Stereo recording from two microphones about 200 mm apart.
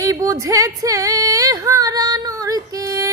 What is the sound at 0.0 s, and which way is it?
Female singing, 15° right (ahead or behind).